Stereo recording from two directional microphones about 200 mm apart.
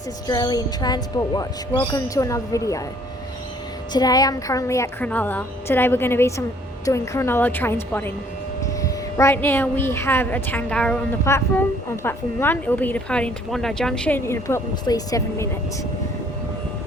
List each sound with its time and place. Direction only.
0.3 s a woman's voice: 20° left (ahead or behind)
3.9 s a woman's voice: 20° left (ahead or behind)